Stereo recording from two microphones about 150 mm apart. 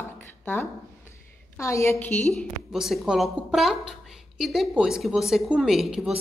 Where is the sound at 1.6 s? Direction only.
20° left (ahead or behind).